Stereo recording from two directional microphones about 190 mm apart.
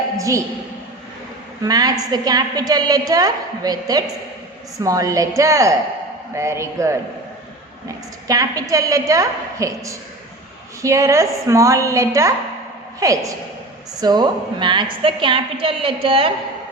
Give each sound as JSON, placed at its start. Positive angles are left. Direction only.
{"t": 0.2, "sound": "a woman's voice", "side_deg": -15}
{"t": 1.6, "sound": "a woman's voice", "side_deg": -20}
{"t": 8.3, "sound": "a woman's voice", "side_deg": -20}